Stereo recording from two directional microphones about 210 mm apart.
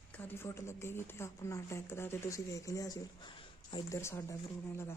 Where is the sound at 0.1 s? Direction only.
10° left (ahead or behind).